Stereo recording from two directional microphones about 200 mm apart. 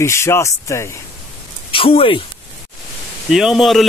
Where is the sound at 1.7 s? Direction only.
25° left (ahead or behind).